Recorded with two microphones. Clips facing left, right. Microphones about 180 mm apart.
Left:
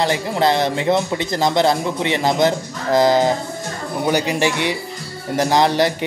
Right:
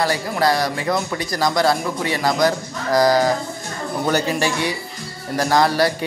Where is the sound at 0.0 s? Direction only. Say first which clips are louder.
Left 2 dB; 20° left (ahead or behind).